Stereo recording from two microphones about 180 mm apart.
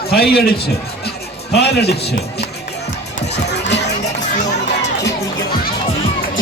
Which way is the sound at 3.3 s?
70° left (ahead or behind).